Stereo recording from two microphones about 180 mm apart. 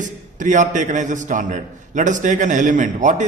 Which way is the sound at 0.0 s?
45° right (ahead or behind).